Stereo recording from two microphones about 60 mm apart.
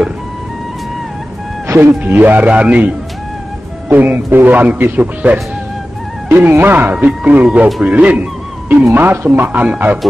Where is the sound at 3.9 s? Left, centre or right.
Right.